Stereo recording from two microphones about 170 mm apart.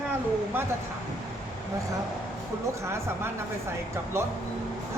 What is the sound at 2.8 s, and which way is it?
Speech, 15° right (ahead or behind).